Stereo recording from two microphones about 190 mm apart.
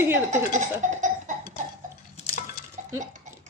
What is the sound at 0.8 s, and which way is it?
Cough, 40° right (ahead or behind).